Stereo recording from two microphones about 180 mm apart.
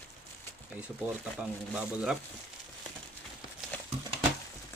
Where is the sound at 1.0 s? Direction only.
10° right (ahead or behind).